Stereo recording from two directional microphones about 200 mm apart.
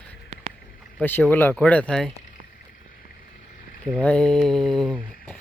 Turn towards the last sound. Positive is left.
turn(degrees=5)  # may be behind; listen again after turning